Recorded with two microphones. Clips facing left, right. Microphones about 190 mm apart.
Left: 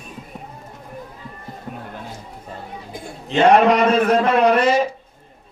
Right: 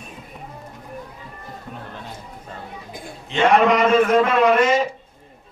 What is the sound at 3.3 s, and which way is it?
A man's voice, 35° left (ahead or behind).